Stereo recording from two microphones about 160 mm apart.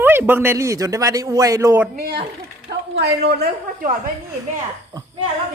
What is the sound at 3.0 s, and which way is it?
Speech, 90° right.